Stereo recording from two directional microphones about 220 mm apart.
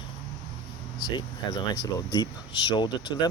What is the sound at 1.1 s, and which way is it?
Speech, 15° left (ahead or behind).